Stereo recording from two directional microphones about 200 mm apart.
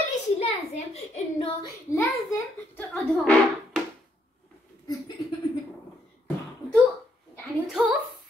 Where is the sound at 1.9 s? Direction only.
15° left (ahead or behind).